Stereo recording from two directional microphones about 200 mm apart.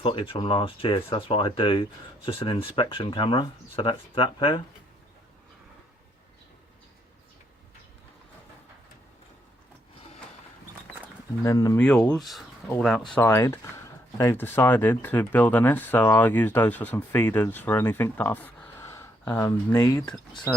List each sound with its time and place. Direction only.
0.0 s speech: 25° left (ahead or behind)
11.4 s speech: 15° left (ahead or behind)